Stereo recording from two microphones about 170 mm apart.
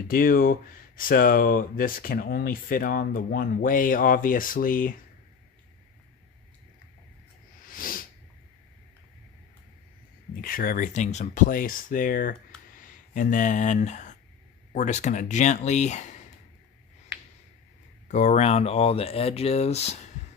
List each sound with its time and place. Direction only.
0.1 s speech: 55° left (ahead or behind)
7.6 s a sound: 55° left (ahead or behind)
10.4 s speech: 55° left (ahead or behind)
18.1 s speech: 45° left (ahead or behind)